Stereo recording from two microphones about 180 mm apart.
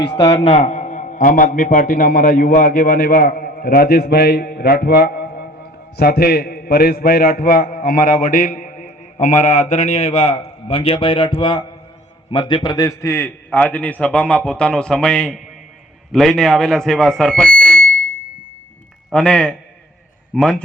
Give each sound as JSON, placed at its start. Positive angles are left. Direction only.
{"t": 0.0, "sound": "a man's voice", "side_deg": 30}
{"t": 19.1, "sound": "a man's voice", "side_deg": 5}